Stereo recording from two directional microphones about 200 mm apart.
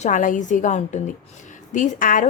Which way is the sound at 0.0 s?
40° left (ahead or behind).